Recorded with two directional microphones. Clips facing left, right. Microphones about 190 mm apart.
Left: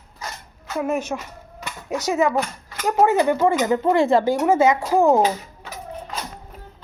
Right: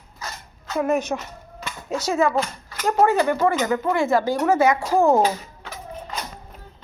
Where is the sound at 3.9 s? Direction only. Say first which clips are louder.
Left 4 dB; 35° left (ahead or behind).